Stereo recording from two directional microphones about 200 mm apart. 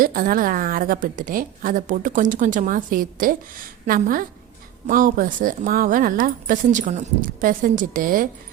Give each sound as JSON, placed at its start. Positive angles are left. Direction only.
{"t": 0.0, "sound": "a woman's voice", "side_deg": -45}